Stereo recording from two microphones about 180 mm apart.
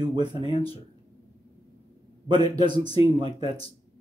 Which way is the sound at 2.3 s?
25° right (ahead or behind).